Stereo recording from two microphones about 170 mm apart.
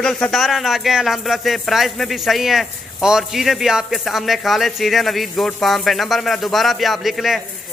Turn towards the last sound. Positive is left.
turn(degrees=0)  # may be behind; listen again after turning